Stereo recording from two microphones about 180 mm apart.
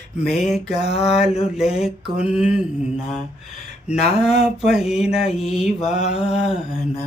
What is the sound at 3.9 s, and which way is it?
Speech, centre (ahead or behind).